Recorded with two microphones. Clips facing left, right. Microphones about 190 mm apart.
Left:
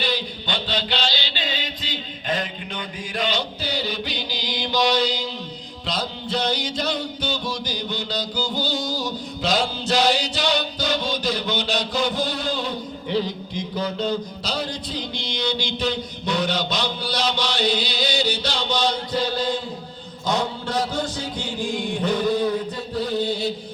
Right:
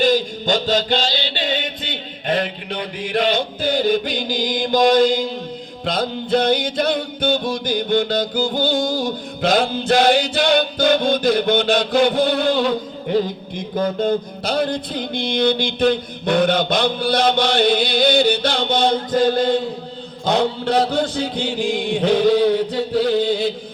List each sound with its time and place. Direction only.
0.0 s chant: 45° right (ahead or behind)
5.8 s music: 55° right (ahead or behind)
20.2 s a sound: 60° right (ahead or behind); by 23.5 s 90° right